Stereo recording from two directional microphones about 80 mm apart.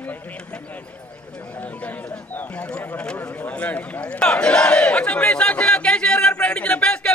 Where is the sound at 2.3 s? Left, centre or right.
Left.